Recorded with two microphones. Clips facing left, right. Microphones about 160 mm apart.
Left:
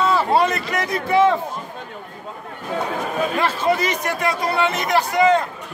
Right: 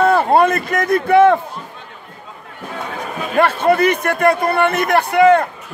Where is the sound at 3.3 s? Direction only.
60° right (ahead or behind).